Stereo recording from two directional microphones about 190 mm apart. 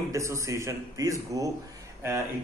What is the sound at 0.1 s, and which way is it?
A man's voice, 15° right (ahead or behind).